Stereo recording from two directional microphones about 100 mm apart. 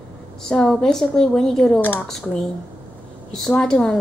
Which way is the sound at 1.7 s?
15° left (ahead or behind).